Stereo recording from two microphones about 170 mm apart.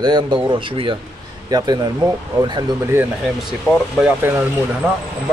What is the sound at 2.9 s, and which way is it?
Speech, 5° right (ahead or behind).